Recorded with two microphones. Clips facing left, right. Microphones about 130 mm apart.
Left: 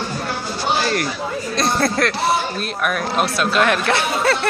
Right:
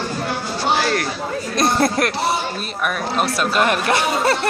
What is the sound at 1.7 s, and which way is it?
Speech, 20° right (ahead or behind).